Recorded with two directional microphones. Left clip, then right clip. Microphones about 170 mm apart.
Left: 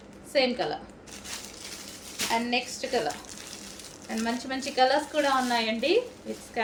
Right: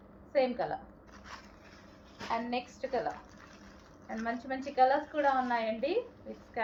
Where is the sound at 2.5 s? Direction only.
65° left (ahead or behind).